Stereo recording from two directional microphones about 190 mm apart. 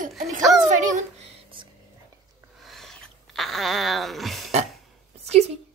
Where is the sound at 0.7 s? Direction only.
40° right (ahead or behind).